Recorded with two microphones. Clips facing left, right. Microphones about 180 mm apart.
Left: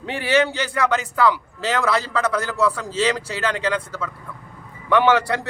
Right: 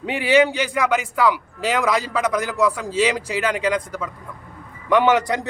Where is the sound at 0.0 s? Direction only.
15° right (ahead or behind).